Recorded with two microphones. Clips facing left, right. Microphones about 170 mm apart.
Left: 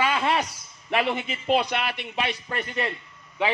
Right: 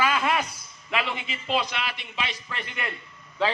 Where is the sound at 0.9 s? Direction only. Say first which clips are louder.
Left 5 dB; 45° left (ahead or behind).